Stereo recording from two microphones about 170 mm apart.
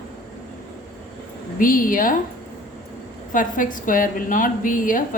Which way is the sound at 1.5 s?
55° left (ahead or behind).